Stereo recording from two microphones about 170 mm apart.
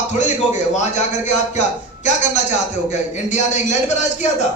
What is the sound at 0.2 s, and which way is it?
A man's voice, 45° left (ahead or behind).